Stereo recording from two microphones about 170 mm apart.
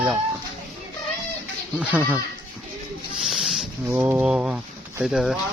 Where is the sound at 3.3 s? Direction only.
Centre (ahead or behind).